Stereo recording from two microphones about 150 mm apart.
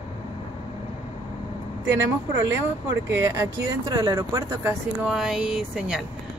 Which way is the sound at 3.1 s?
20° right (ahead or behind).